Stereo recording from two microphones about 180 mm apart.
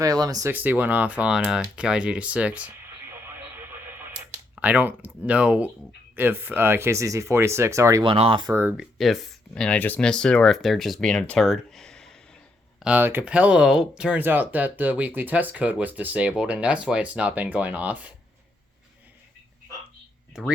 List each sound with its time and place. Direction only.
0.0 s speech: 20° right (ahead or behind)
0.5 s speech: 10° right (ahead or behind)
8.0 s speech: 30° right (ahead or behind)
8.5 s speech: 5° right (ahead or behind)
12.8 s speech: 10° right (ahead or behind)